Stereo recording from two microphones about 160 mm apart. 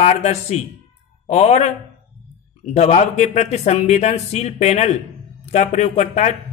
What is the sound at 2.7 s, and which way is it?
Speech, 45° left (ahead or behind).